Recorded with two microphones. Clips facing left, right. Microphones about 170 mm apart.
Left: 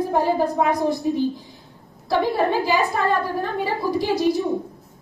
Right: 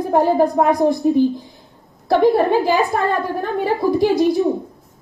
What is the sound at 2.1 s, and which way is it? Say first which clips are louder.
A woman's voice: right 6 dB; 55° right (ahead or behind).